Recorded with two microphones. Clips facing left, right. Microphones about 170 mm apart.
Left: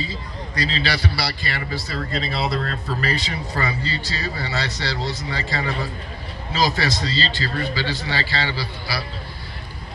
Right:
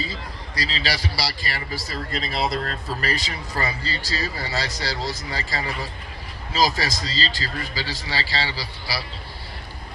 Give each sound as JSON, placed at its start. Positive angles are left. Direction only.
{"t": 0.0, "sound": "a man's voice", "side_deg": -35}